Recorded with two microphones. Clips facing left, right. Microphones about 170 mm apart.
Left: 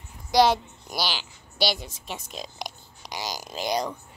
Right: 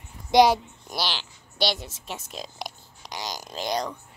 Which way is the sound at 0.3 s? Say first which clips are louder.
Right 2 dB; 20° right (ahead or behind).